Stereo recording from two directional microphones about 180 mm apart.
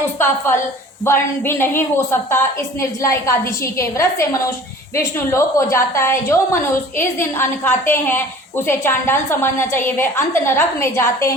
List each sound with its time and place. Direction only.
0.2 s a woman's voice: 15° left (ahead or behind)